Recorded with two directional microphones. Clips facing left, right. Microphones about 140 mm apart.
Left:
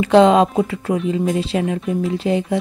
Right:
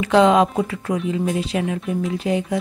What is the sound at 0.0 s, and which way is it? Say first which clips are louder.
A woman's voice: left 3 dB; 35° left (ahead or behind).